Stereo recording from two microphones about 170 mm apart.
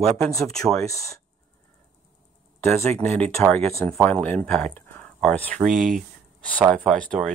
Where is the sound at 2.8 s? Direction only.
40° right (ahead or behind).